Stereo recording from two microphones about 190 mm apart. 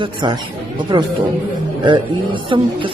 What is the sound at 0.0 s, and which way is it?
A man's voice, 25° right (ahead or behind).